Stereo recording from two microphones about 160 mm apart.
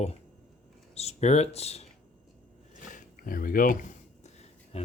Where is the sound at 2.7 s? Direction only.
55° left (ahead or behind).